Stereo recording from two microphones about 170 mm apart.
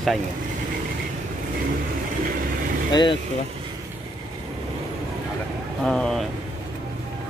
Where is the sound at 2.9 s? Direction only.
25° left (ahead or behind).